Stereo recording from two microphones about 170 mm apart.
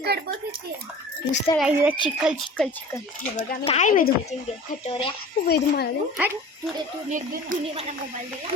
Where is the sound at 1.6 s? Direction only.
10° right (ahead or behind).